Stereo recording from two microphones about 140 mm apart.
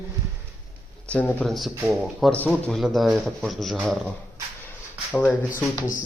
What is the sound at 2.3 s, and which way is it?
Speech, 10° left (ahead or behind).